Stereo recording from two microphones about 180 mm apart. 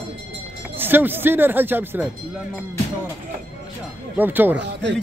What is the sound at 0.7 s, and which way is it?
Speech, 10° right (ahead or behind).